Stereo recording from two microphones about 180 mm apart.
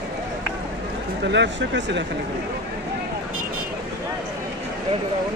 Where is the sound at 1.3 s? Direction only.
80° right.